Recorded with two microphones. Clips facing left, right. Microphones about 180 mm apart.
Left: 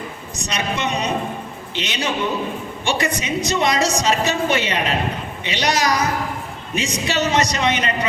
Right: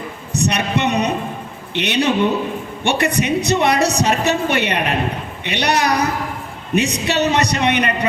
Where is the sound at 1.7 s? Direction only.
65° right (ahead or behind).